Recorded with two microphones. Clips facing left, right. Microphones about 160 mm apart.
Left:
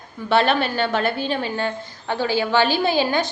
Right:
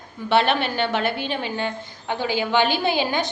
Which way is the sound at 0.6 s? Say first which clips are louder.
Left 1 dB; 20° right (ahead or behind).